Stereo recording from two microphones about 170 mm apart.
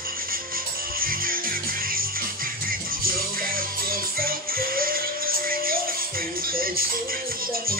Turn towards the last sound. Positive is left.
turn(degrees=-60)  # may be behind; listen again after turning